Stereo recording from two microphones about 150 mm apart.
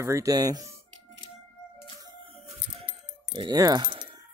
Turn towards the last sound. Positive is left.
turn(degrees=-30)  # may be behind; listen again after turning